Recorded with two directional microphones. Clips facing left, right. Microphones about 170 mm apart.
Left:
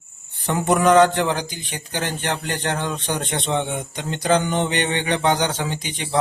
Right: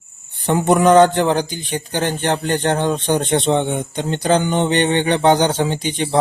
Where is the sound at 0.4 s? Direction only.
25° right (ahead or behind).